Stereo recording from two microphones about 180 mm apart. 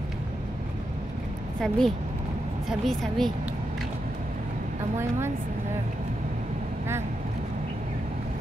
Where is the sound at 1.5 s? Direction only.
5° left (ahead or behind).